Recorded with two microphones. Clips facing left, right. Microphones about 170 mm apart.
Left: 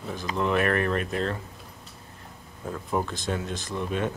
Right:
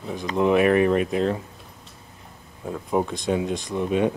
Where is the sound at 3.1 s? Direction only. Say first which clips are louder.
Right 7 dB; centre (ahead or behind).